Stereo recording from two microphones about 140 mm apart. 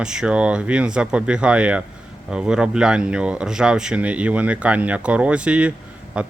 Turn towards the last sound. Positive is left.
turn(degrees=-5)  # may be behind; listen again after turning